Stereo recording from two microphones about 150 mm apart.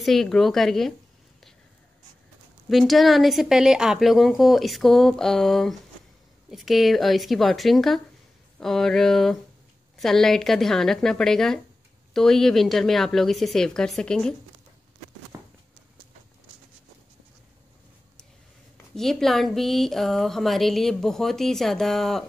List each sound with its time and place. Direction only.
0.0 s speech: centre (ahead or behind)
2.7 s speech: centre (ahead or behind)
15.3 s a sound: 20° right (ahead or behind)
18.9 s speech: centre (ahead or behind)